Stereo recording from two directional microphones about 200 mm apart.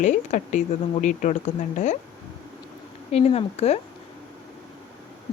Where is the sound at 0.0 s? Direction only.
40° left (ahead or behind).